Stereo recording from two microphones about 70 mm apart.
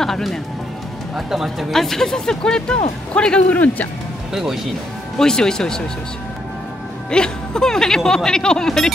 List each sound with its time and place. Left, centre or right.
0.0 s speech: centre; by 3.9 s left
4.3 s speech: centre
5.2 s speech: centre
7.1 s speech: centre